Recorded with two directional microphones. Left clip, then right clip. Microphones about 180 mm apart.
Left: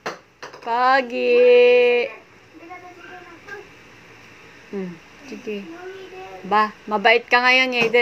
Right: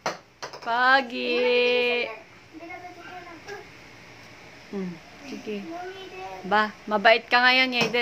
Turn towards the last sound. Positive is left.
turn(degrees=-60)  # may be behind; listen again after turning